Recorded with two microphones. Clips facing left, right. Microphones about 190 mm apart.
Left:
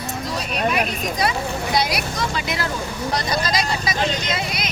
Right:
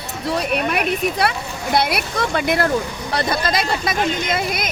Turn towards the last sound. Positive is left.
turn(degrees=-50)  # may be behind; listen again after turning